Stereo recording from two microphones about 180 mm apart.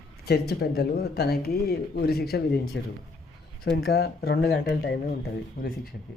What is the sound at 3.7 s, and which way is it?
Speech, 60° left (ahead or behind).